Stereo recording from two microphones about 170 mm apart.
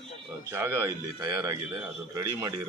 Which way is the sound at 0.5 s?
15° right (ahead or behind).